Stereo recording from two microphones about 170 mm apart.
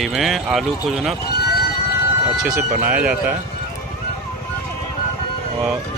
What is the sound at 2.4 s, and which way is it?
Speech, 10° right (ahead or behind).